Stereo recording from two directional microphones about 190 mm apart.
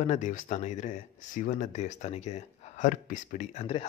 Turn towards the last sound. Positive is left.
turn(degrees=35)  # may be behind; listen again after turning